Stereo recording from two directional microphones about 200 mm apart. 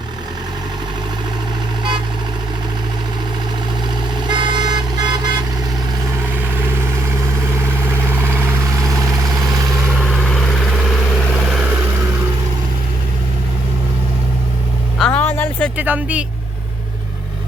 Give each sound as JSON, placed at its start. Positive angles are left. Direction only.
{"t": 4.3, "sound": "vehicle", "side_deg": -20}
{"t": 7.7, "sound": "vehicle", "side_deg": -10}
{"t": 9.9, "sound": "vehicle", "side_deg": 0}
{"t": 14.9, "sound": "a sound", "side_deg": 5}
{"t": 15.8, "sound": "speech", "side_deg": -5}